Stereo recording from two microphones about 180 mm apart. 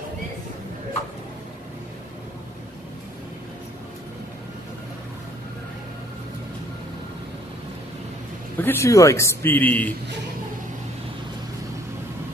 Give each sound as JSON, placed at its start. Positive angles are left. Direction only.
{"t": 8.5, "sound": "a man's voice", "side_deg": 10}